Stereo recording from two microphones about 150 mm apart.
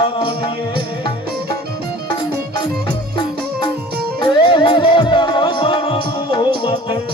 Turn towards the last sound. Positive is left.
turn(degrees=30)  # may be behind; listen again after turning